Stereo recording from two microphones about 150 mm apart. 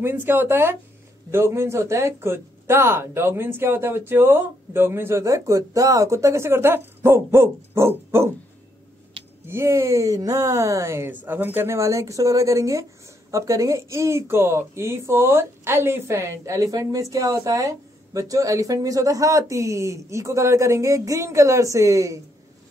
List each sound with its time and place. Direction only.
0.0 s speech: 15° right (ahead or behind)
9.5 s speech: 20° right (ahead or behind)